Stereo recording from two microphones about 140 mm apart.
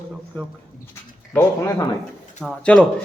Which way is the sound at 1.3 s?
20° left (ahead or behind).